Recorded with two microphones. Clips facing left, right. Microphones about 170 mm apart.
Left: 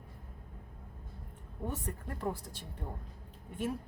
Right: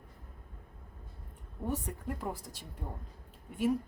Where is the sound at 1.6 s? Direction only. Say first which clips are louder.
Right 3 dB; 10° right (ahead or behind).